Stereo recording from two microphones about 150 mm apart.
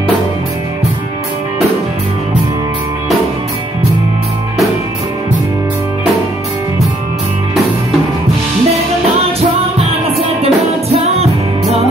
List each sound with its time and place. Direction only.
9.4 s music: 40° right (ahead or behind)